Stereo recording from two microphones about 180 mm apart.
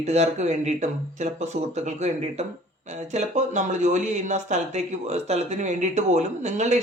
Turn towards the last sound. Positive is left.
turn(degrees=-40)  # may be behind; listen again after turning